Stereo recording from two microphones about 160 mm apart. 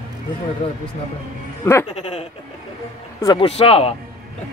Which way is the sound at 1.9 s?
40° left (ahead or behind).